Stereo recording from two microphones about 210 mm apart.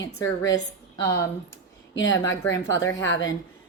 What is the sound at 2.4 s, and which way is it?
Speech, 15° left (ahead or behind).